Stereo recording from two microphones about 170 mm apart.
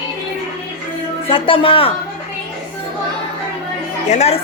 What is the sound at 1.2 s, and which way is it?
Music, 30° left (ahead or behind).